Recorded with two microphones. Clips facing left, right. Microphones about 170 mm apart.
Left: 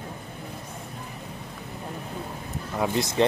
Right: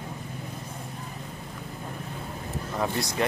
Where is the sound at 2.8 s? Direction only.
20° left (ahead or behind).